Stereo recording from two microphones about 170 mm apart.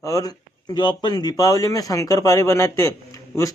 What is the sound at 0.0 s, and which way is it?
A man's voice, 20° left (ahead or behind).